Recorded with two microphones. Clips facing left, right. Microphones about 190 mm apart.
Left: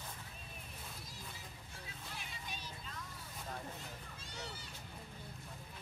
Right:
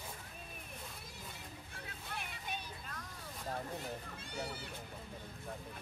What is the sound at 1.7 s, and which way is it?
Vehicle, 60° right (ahead or behind).